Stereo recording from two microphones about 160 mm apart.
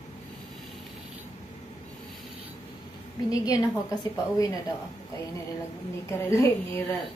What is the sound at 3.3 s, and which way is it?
Speech, 20° left (ahead or behind).